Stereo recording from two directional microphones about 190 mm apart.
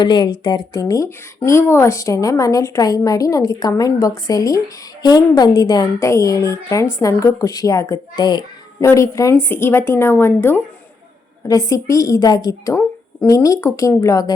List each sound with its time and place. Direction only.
0.0 s a woman's voice: 25° left (ahead or behind)